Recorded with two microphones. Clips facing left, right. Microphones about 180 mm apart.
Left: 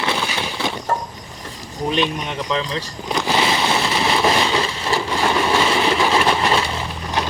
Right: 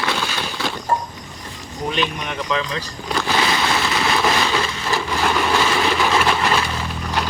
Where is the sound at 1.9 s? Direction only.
30° left (ahead or behind).